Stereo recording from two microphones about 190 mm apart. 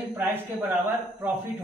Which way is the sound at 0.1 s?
10° right (ahead or behind).